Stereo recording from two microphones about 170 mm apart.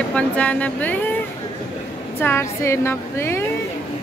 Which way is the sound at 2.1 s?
15° left (ahead or behind).